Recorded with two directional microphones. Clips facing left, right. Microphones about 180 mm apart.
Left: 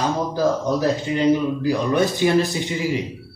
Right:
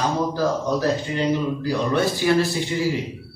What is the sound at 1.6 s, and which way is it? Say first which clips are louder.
A man's voice: left 2 dB; 20° left (ahead or behind).